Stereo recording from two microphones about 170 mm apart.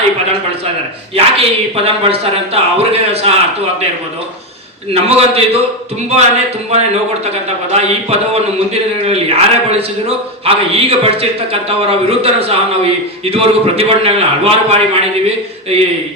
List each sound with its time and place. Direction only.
1.1 s a man's voice: 35° right (ahead or behind)
4.9 s a man's voice: 35° right (ahead or behind)